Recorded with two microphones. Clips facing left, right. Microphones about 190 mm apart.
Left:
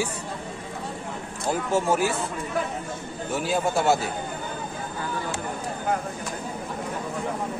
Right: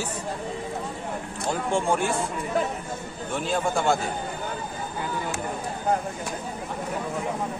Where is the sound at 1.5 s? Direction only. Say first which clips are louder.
Left 1 dB; 5° left (ahead or behind).